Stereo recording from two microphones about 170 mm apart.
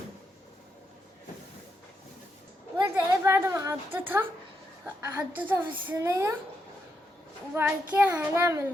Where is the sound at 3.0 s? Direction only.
15° right (ahead or behind).